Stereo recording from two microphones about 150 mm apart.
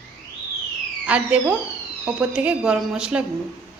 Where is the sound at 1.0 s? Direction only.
10° right (ahead or behind).